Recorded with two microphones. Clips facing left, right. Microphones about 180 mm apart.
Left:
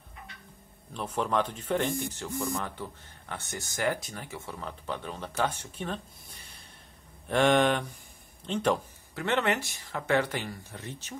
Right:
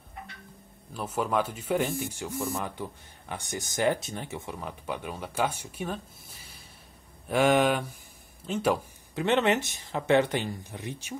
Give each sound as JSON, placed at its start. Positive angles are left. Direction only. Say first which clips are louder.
{"t": 0.9, "sound": "speech", "louder": "right 1 dB", "side_deg": -5}
{"t": 9.1, "sound": "speech", "louder": "right 4 dB", "side_deg": -20}